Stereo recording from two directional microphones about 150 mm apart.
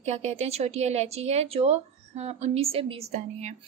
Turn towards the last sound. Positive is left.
turn(degrees=-45)  # may be behind; listen again after turning